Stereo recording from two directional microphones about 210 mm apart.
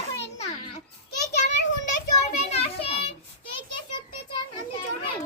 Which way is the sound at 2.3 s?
30° left (ahead or behind).